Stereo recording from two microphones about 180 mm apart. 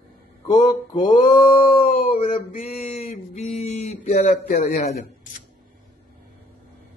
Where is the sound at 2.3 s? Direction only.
30° left (ahead or behind).